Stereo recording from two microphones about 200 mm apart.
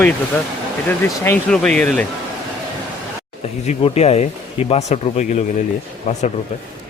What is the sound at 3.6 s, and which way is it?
Speech, 30° left (ahead or behind).